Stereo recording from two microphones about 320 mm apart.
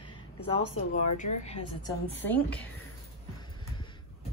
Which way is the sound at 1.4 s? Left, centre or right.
Centre.